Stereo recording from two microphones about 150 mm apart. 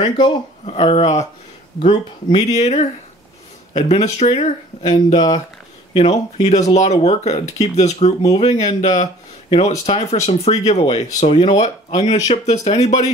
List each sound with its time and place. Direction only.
0.0 s speech: 35° left (ahead or behind)
1.9 s speech: 35° left (ahead or behind)
2.4 s speech: 50° left (ahead or behind)
4.8 s speech: 30° left (ahead or behind)
5.9 s speech: 45° left (ahead or behind)